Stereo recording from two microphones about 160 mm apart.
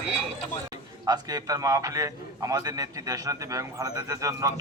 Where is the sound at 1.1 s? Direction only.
25° right (ahead or behind).